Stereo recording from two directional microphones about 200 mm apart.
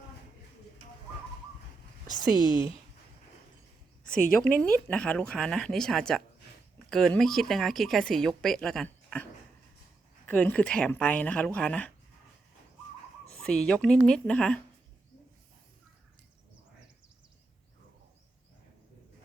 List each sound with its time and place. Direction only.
2.0 s speech: 20° left (ahead or behind)
4.0 s speech: 5° left (ahead or behind)
10.2 s speech: 10° left (ahead or behind)
13.2 s speech: 5° left (ahead or behind)